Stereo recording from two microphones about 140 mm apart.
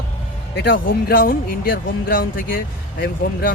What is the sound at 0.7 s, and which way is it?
Speech, 85° left.